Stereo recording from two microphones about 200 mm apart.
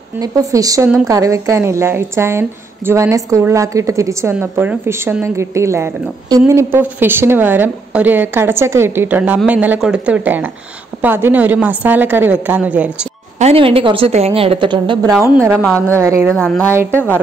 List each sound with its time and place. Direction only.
0.2 s a woman's voice: 15° right (ahead or behind)
13.4 s a woman's voice: 30° right (ahead or behind)
15.3 s a woman's voice: 10° right (ahead or behind)
16.3 s speech: 5° left (ahead or behind)